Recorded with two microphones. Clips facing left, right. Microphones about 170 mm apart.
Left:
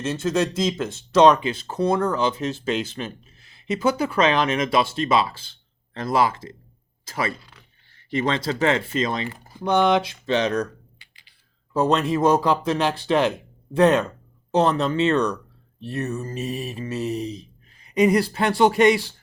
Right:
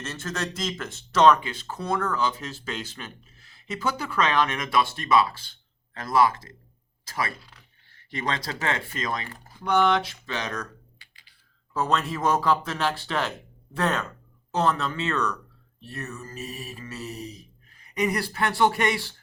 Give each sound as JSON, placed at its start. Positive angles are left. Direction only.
{"t": 0.0, "sound": "speech", "side_deg": 20}